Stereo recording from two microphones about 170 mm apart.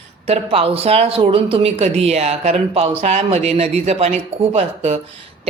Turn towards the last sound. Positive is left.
turn(degrees=-40)  # may be behind; listen again after turning